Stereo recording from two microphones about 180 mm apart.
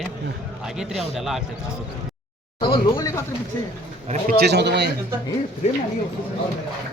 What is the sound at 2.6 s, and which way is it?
Speech, 25° left (ahead or behind).